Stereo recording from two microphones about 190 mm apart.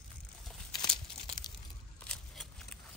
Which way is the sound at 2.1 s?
5° left (ahead or behind).